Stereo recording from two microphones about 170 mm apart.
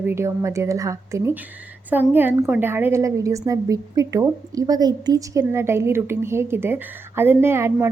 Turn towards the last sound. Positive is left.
turn(degrees=-15)  # may be behind; listen again after turning